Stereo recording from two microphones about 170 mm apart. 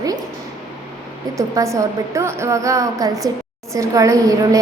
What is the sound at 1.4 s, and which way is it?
A woman's voice, 20° right (ahead or behind).